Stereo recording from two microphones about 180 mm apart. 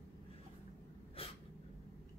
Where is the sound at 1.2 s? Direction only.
30° left (ahead or behind).